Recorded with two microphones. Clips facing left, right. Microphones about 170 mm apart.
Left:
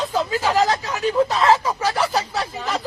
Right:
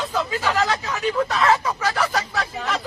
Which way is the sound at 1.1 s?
20° left (ahead or behind).